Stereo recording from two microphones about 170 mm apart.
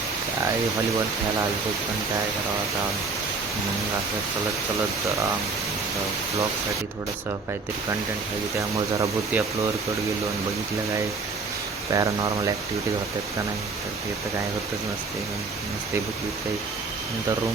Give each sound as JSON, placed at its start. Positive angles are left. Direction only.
{"t": 8.5, "sound": "speech", "side_deg": -15}
{"t": 11.9, "sound": "speech", "side_deg": -20}